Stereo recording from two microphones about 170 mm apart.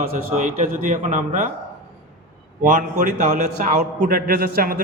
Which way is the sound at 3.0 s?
50° right (ahead or behind).